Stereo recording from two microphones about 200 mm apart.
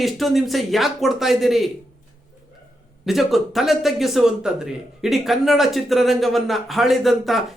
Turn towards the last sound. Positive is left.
turn(degrees=0)  # may be behind; listen again after turning